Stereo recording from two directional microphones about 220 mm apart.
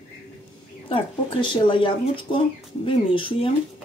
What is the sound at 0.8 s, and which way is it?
Speech, 25° left (ahead or behind).